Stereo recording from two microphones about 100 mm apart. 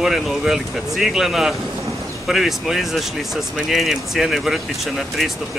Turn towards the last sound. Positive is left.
turn(degrees=0)  # may be behind; listen again after turning